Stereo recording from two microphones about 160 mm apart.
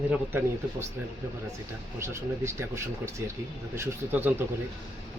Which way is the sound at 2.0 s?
15° right (ahead or behind).